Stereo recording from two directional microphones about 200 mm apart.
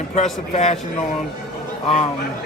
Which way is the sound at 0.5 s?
35° left (ahead or behind).